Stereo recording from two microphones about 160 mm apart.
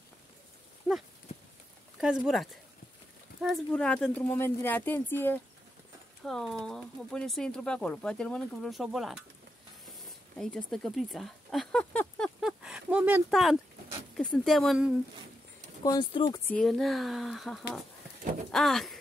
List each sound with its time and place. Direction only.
2.0 s speech: centre (ahead or behind); by 5.4 s 15° left (ahead or behind)
6.2 s speech: 5° left (ahead or behind)
10.0 s a sound: 5° left (ahead or behind)
14.1 s speech: 5° left (ahead or behind)
15.8 s speech: 25° left (ahead or behind)
16.4 s speech: 5° left (ahead or behind)